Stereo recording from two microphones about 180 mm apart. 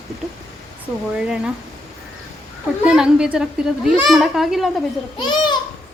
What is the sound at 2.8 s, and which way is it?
Speech, 5° right (ahead or behind).